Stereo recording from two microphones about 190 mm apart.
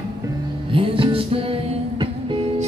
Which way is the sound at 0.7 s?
30° right (ahead or behind).